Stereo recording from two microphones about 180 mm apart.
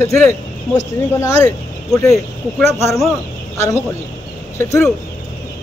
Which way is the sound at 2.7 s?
15° left (ahead or behind).